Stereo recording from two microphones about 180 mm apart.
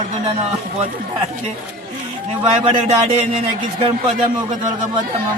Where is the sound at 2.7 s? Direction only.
35° right (ahead or behind).